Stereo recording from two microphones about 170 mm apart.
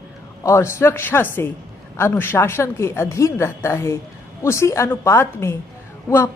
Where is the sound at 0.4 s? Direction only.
15° left (ahead or behind).